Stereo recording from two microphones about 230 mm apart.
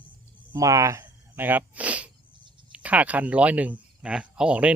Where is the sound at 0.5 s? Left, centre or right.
Centre.